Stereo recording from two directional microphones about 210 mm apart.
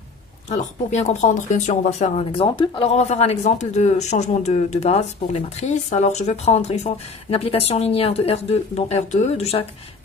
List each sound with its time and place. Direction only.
0.5 s speech: 35° left (ahead or behind)